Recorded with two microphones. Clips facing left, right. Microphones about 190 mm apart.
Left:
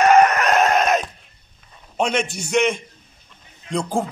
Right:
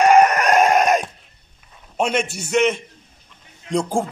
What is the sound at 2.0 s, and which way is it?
Speech, 5° right (ahead or behind).